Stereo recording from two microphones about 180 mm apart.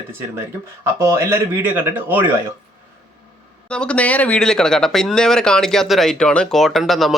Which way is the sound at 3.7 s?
5° left (ahead or behind).